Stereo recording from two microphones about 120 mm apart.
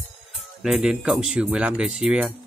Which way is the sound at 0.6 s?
5° right (ahead or behind).